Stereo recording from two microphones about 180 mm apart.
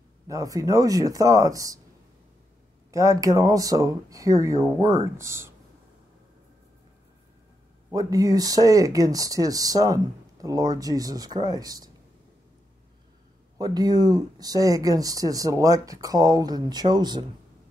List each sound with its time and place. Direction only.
0.3 s speech: 20° right (ahead or behind)
2.9 s speech: 20° right (ahead or behind)
7.9 s speech: 20° right (ahead or behind)
13.6 s speech: 20° right (ahead or behind)